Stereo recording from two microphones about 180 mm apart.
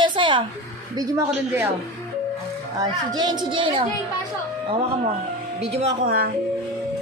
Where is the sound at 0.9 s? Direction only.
15° right (ahead or behind).